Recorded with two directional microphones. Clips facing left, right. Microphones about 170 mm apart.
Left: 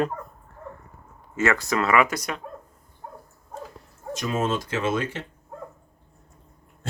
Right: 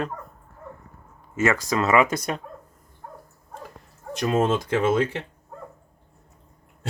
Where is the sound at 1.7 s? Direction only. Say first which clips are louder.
Right 2 dB; 25° right (ahead or behind).